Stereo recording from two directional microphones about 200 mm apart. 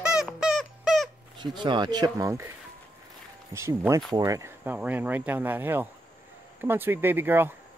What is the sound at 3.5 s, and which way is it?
Speech, 15° right (ahead or behind).